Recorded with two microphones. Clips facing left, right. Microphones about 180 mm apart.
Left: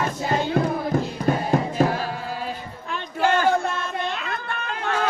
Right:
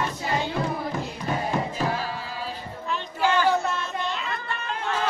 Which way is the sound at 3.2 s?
50° left (ahead or behind).